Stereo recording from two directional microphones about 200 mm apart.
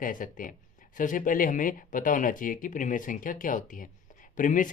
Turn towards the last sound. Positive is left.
turn(degrees=40)  # may be behind; listen again after turning